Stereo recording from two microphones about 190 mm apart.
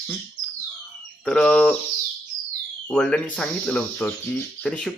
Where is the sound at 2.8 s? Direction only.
5° left (ahead or behind).